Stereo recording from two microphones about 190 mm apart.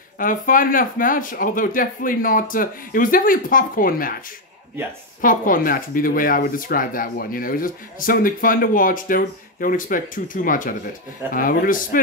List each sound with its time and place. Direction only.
0.2 s speech: 45° left (ahead or behind)
5.2 s speech: 45° left (ahead or behind)